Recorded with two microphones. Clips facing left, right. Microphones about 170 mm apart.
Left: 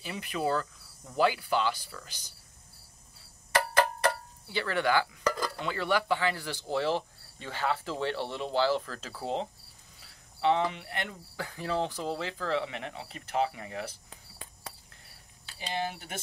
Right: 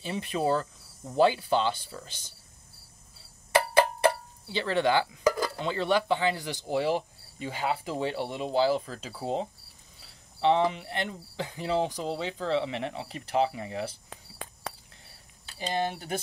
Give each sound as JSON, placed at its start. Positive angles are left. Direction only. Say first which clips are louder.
{"t": 0.0, "sound": "speech", "louder": "right 3 dB", "side_deg": -25}
{"t": 3.5, "sound": "a sound", "louder": "right 4 dB", "side_deg": -15}
{"t": 5.6, "sound": "speech", "louder": "right 3 dB", "side_deg": -20}
{"t": 14.1, "sound": "cricket", "louder": "right 7 dB", "side_deg": -90}
{"t": 15.4, "sound": "speech", "louder": "right 4 dB", "side_deg": -40}